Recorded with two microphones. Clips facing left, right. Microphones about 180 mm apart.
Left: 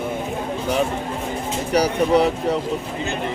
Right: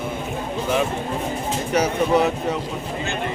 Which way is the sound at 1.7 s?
35° left (ahead or behind).